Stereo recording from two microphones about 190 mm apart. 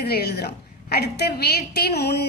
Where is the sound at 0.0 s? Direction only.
55° left (ahead or behind).